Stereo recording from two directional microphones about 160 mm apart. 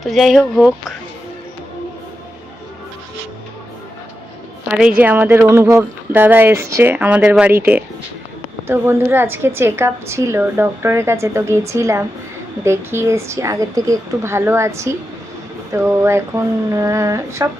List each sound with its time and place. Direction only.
0.0 s speech: centre (ahead or behind)
4.8 s a woman's voice: 10° right (ahead or behind)